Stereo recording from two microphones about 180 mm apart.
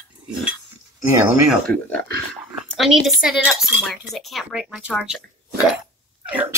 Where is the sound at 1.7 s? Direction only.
70° right (ahead or behind).